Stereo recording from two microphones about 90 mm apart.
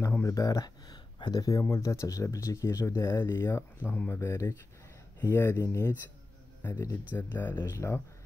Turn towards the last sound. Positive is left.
turn(degrees=30)  # may be behind; listen again after turning